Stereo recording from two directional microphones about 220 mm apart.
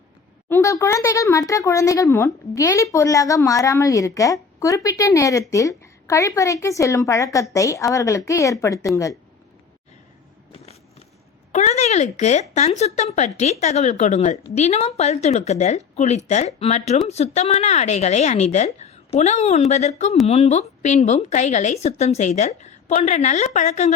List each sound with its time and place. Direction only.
0.4 s speech: 10° left (ahead or behind)
11.5 s speech: 30° left (ahead or behind)